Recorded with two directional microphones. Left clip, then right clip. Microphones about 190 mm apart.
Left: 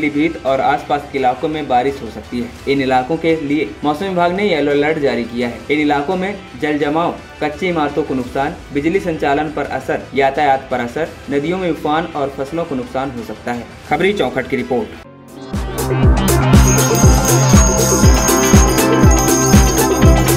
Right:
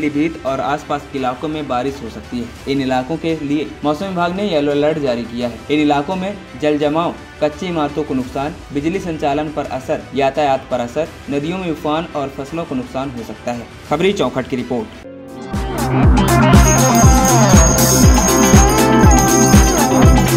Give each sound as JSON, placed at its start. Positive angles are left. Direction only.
{"t": 0.0, "sound": "speech", "side_deg": -10}
{"t": 13.5, "sound": "speech", "side_deg": -15}
{"t": 15.5, "sound": "music", "side_deg": 0}